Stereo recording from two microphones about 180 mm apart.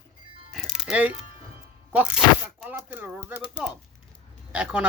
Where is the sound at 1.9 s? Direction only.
5° right (ahead or behind).